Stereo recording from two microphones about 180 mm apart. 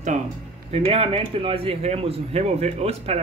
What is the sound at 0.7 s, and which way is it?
Speech, 35° right (ahead or behind).